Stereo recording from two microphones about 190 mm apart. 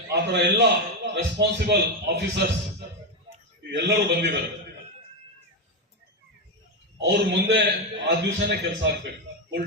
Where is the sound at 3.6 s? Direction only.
60° right (ahead or behind).